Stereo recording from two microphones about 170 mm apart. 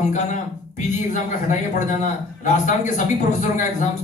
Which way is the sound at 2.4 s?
45° left (ahead or behind).